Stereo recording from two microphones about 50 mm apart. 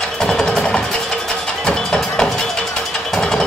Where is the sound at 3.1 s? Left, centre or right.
Centre.